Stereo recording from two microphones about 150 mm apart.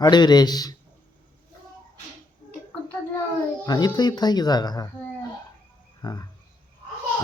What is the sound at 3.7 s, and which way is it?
Speech, 25° left (ahead or behind).